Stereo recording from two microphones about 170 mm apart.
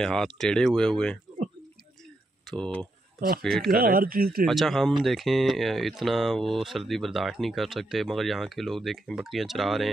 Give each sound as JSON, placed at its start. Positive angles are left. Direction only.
{"t": 0.0, "sound": "speech", "side_deg": 5}
{"t": 2.5, "sound": "speech", "side_deg": 5}
{"t": 3.7, "sound": "speech", "side_deg": -55}
{"t": 4.5, "sound": "speech", "side_deg": 0}